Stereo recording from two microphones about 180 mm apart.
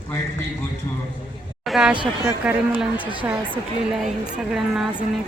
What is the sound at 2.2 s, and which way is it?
Speech, 5° right (ahead or behind).